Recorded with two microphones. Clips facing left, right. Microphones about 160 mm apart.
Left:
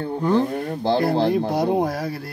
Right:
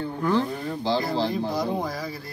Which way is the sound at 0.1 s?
20° left (ahead or behind).